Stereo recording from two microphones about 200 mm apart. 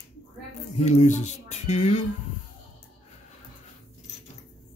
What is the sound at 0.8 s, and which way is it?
Speech, 35° left (ahead or behind).